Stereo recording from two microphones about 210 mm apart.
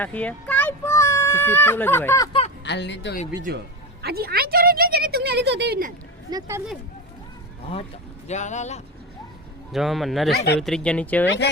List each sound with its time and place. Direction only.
0.0 s speech: 5° left (ahead or behind)
2.6 s speech: 55° left (ahead or behind)
4.0 s a woman's voice: 45° right (ahead or behind)
8.3 s speech: 35° left (ahead or behind)
9.7 s speech: centre (ahead or behind)
10.3 s speech: 50° left (ahead or behind)
10.6 s speech: 5° left (ahead or behind)
11.3 s speech: 55° left (ahead or behind)